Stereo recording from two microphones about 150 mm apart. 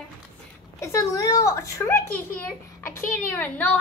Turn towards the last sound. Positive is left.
turn(degrees=10)  # may be behind; listen again after turning